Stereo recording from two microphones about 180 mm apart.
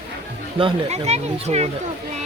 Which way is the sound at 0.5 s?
35° right (ahead or behind).